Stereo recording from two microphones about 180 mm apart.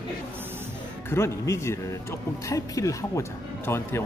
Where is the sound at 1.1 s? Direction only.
15° left (ahead or behind).